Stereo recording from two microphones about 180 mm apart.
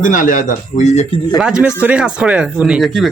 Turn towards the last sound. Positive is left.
turn(degrees=0)  # may be behind; listen again after turning